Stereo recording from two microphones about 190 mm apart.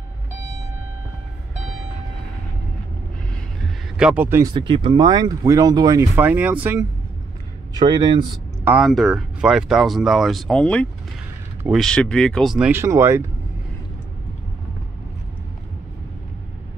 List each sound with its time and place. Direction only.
3.6 s a sound: 5° right (ahead or behind)
4.6 s speech: 25° right (ahead or behind); by 6.9 s 10° right (ahead or behind)
7.8 s speech: 20° right (ahead or behind)
8.6 s speech: centre (ahead or behind)